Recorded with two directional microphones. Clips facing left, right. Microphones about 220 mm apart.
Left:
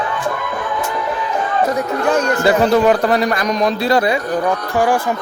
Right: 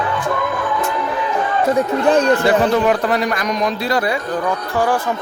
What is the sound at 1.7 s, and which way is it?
Speech, 30° right (ahead or behind).